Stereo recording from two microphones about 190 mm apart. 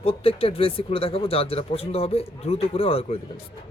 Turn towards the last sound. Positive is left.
turn(degrees=30)  # may be behind; listen again after turning